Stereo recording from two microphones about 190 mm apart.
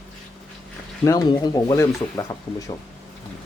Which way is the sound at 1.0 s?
15° left (ahead or behind).